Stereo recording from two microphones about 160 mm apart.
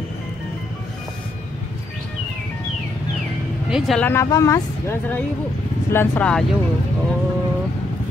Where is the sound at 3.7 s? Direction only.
Centre (ahead or behind).